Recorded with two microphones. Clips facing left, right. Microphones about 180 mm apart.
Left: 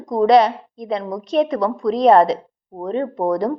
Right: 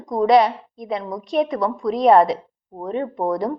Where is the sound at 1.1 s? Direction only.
45° left (ahead or behind).